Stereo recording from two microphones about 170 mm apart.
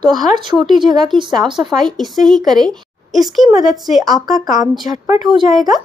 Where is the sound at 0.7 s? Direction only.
25° right (ahead or behind).